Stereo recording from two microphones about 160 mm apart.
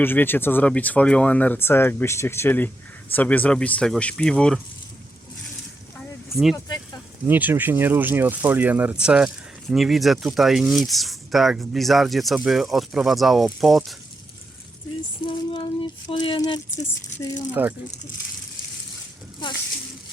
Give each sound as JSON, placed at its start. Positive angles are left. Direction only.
{"t": 0.0, "sound": "speech", "side_deg": 15}
{"t": 6.3, "sound": "speech", "side_deg": 0}
{"t": 7.3, "sound": "speech", "side_deg": -10}
{"t": 15.3, "sound": "speech", "side_deg": 30}
{"t": 17.5, "sound": "speech", "side_deg": -10}